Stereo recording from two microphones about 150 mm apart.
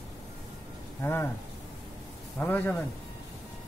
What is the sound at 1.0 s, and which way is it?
Speech, 15° left (ahead or behind).